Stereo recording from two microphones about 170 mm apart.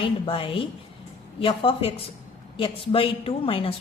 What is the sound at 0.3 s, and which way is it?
A woman's voice, 30° left (ahead or behind).